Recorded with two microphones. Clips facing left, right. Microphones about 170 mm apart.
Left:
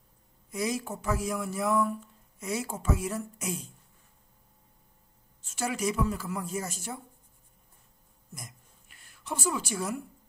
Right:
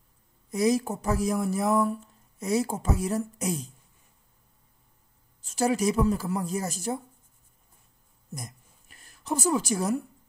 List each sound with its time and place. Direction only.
0.5 s speech: 40° right (ahead or behind)
5.4 s speech: 35° right (ahead or behind)
8.3 s a sound: 40° right (ahead or behind)